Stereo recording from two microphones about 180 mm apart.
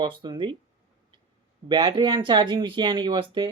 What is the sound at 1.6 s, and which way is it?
Speech, 25° right (ahead or behind).